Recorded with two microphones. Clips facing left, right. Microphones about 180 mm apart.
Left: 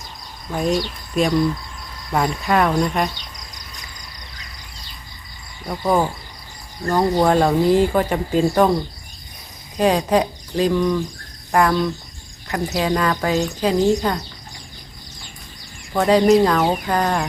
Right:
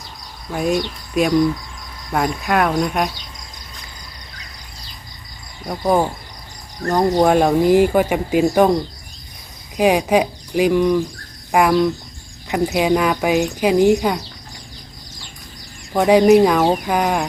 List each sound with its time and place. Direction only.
0.5 s speech: 5° right (ahead or behind)
5.6 s speech: 15° right (ahead or behind)
7.2 s speech: 15° right (ahead or behind)
15.9 s speech: 15° right (ahead or behind)